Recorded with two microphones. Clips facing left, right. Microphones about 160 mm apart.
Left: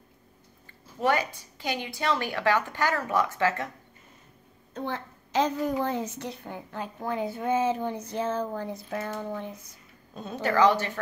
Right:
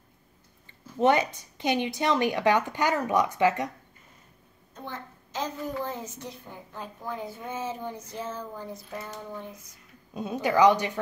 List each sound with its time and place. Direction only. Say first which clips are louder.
0.9 s a woman's voice: right 3 dB; 20° right (ahead or behind)
4.7 s a woman's voice: left 6 dB; 75° left (ahead or behind)
10.1 s a woman's voice: right 1 dB; 15° right (ahead or behind)